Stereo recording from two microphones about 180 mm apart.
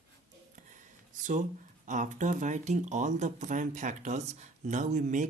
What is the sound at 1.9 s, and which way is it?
Speech, 45° right (ahead or behind).